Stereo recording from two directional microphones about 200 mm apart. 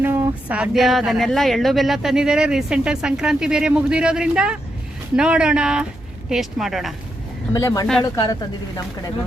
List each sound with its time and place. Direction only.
0.0 s speech: 10° right (ahead or behind)
7.5 s speech: 15° left (ahead or behind)